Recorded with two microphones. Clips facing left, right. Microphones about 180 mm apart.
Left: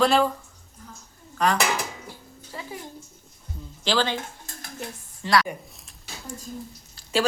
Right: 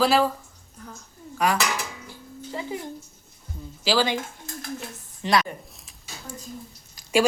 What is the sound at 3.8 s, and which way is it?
Speech, 10° right (ahead or behind).